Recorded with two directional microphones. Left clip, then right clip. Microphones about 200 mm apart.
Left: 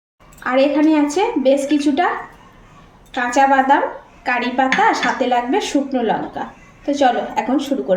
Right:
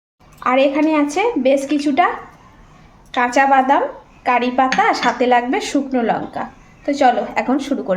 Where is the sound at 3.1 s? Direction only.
40° right (ahead or behind).